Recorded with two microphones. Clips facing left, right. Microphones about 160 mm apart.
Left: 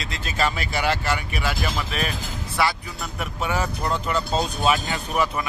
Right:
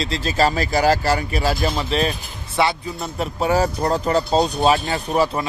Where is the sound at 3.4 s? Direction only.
35° right (ahead or behind).